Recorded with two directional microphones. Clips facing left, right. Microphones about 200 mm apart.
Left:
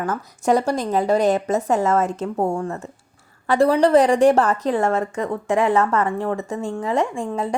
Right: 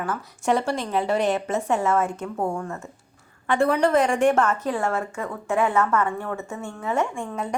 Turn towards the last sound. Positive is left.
turn(degrees=30)  # may be behind; listen again after turning